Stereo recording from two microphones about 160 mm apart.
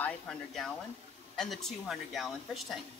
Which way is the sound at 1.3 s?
Centre (ahead or behind).